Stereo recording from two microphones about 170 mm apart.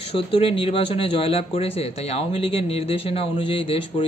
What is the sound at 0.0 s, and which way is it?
Speech, 30° left (ahead or behind).